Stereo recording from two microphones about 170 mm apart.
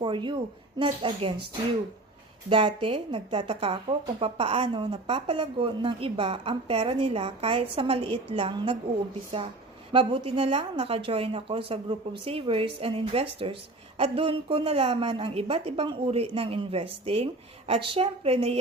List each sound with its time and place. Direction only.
0.0 s speech: 25° right (ahead or behind)
2.5 s a woman's voice: 30° right (ahead or behind)
9.9 s a woman's voice: 35° right (ahead or behind)